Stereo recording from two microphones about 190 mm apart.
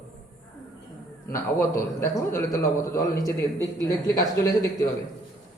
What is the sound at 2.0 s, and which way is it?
A man's voice, 15° left (ahead or behind).